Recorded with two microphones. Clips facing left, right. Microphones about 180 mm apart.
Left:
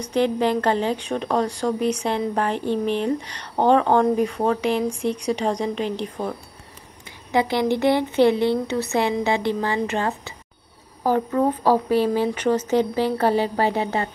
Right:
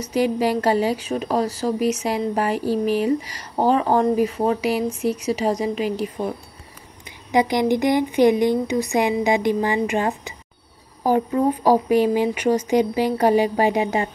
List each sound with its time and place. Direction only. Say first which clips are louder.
0.0 s a woman's voice: even; 10° right (ahead or behind)